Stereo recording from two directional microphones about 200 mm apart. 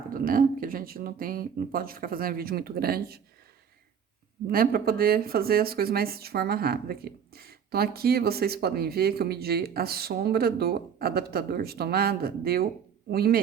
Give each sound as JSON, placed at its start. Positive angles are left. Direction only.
{"t": 0.1, "sound": "speech", "side_deg": -45}
{"t": 4.4, "sound": "speech", "side_deg": -45}